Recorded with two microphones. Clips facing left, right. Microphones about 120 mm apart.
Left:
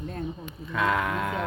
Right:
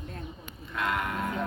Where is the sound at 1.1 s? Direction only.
90° left.